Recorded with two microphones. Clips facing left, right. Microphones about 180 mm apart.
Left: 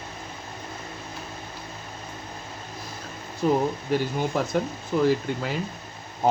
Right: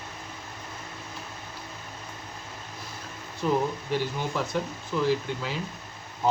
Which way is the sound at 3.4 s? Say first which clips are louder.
Left 3 dB; 40° left (ahead or behind).